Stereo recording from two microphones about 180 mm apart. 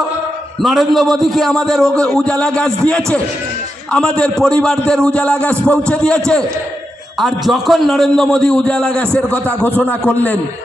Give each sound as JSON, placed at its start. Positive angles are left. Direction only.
{"t": 0.6, "sound": "a man's voice", "side_deg": 0}